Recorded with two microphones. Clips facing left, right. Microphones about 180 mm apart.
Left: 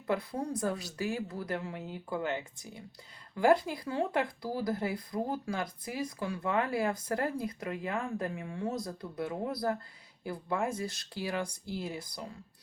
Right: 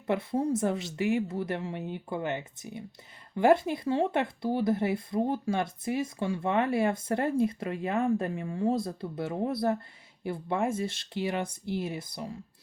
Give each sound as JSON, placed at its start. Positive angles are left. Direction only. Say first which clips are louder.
{"t": 0.1, "sound": "speech", "louder": "right 5 dB", "side_deg": -25}